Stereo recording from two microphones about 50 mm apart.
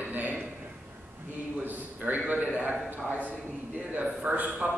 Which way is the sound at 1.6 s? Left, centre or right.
Right.